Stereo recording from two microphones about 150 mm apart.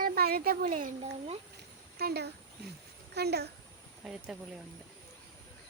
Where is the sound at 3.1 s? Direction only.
90° right.